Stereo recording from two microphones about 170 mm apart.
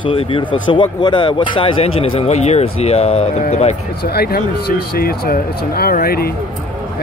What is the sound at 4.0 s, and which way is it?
Speech, 65° left (ahead or behind).